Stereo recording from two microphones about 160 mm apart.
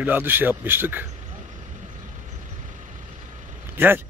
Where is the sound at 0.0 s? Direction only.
10° right (ahead or behind).